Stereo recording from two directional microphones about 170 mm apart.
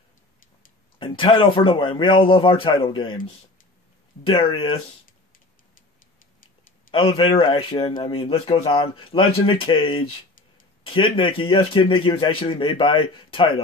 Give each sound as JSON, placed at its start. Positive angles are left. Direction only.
{"t": 0.9, "sound": "speech", "side_deg": 30}
{"t": 4.3, "sound": "speech", "side_deg": 30}
{"t": 6.9, "sound": "speech", "side_deg": 30}